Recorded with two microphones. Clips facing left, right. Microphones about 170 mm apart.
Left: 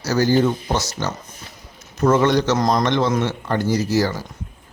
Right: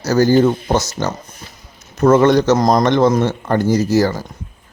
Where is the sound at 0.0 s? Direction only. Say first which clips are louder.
Right 5 dB; 45° right (ahead or behind).